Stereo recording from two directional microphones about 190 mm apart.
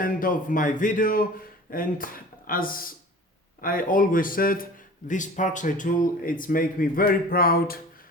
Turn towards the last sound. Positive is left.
turn(degrees=50)  # may be behind; listen again after turning